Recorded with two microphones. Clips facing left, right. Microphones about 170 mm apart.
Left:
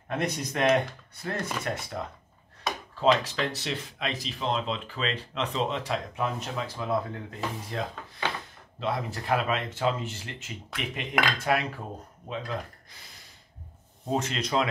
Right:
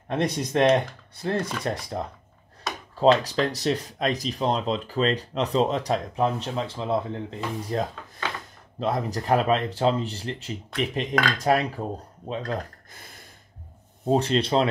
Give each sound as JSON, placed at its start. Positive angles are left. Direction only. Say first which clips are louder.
{"t": 0.1, "sound": "speech", "louder": "right 5 dB", "side_deg": -30}
{"t": 3.0, "sound": "speech", "louder": "right 5 dB", "side_deg": -35}
{"t": 7.7, "sound": "speech", "louder": "right 5 dB", "side_deg": -40}
{"t": 14.0, "sound": "speech", "louder": "right 7 dB", "side_deg": -30}